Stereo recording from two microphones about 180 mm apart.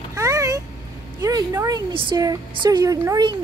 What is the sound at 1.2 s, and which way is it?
Speech, 20° right (ahead or behind).